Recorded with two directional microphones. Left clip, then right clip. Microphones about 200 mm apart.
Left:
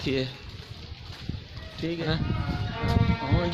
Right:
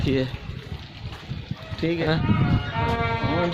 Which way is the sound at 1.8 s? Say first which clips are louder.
Right 6 dB; 15° right (ahead or behind).